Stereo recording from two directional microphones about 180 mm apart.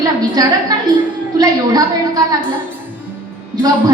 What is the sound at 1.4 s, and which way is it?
Speech, 20° right (ahead or behind).